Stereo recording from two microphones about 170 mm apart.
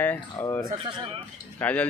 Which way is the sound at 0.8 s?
30° right (ahead or behind).